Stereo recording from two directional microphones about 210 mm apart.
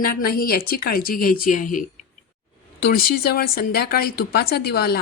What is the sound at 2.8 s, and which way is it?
Speech, 45° left (ahead or behind).